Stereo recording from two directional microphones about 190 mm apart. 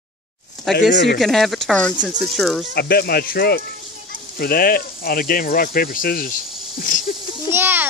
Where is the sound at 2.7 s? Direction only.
55° left (ahead or behind).